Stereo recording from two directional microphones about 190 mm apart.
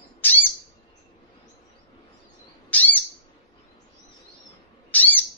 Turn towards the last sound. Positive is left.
turn(degrees=10)  # may be behind; listen again after turning